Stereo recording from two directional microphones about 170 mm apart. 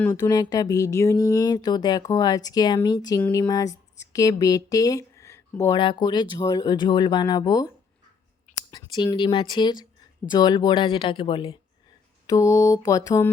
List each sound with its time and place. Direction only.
0.0 s speech: 20° left (ahead or behind)
5.7 s speech: 30° left (ahead or behind)
8.7 s speech: 20° left (ahead or behind)
12.2 s mantra: 20° left (ahead or behind)